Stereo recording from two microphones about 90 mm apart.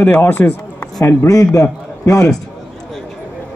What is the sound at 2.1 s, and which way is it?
Speech, 40° left (ahead or behind).